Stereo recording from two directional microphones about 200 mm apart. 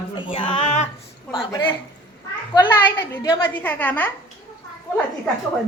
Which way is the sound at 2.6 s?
10° left (ahead or behind).